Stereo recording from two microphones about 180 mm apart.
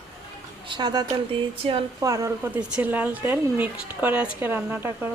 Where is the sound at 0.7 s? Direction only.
25° right (ahead or behind).